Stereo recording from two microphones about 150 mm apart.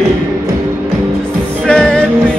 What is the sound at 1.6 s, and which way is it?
Music, 5° left (ahead or behind).